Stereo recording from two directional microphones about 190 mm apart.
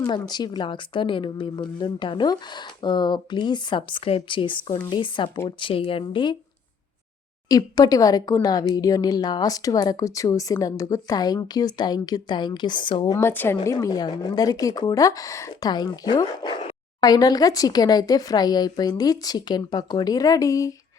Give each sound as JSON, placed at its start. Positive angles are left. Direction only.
{"t": 0.0, "sound": "speech", "side_deg": 20}
{"t": 7.4, "sound": "speech", "side_deg": 20}